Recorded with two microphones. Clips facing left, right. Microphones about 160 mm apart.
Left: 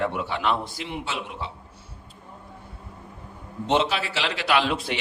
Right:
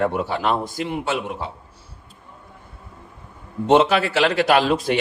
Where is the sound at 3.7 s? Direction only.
50° right (ahead or behind).